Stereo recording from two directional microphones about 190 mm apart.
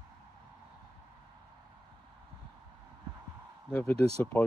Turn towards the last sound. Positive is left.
turn(degrees=-30)  # may be behind; listen again after turning